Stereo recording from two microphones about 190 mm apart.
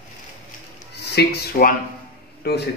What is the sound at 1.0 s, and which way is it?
Speech, 60° left (ahead or behind).